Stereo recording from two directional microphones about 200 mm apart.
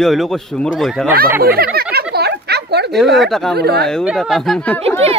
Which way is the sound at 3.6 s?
55° right (ahead or behind).